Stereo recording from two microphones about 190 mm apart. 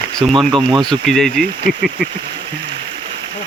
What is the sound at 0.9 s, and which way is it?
Speech, centre (ahead or behind).